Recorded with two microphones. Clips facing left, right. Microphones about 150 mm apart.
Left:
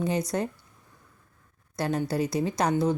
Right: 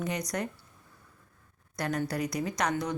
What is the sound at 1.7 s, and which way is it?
Speech, 25° left (ahead or behind).